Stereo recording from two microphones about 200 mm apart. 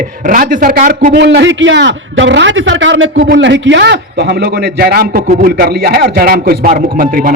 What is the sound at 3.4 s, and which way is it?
A man's voice, 60° right (ahead or behind).